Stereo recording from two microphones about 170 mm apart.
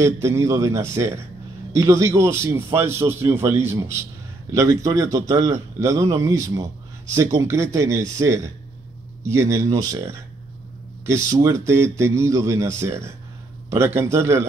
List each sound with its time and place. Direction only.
0.0 s a man's voice: 15° right (ahead or behind)